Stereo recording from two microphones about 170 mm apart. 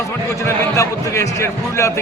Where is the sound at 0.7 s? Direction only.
15° left (ahead or behind).